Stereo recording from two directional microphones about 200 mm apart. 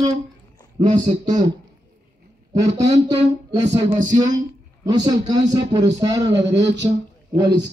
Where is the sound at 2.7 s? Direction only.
20° right (ahead or behind).